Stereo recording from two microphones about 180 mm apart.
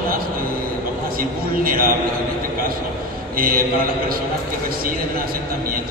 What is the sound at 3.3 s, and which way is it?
Speech, 50° right (ahead or behind).